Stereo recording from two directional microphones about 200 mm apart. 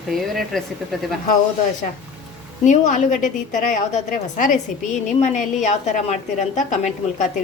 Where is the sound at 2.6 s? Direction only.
35° left (ahead or behind).